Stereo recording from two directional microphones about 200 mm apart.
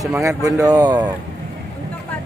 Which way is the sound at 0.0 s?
15° right (ahead or behind).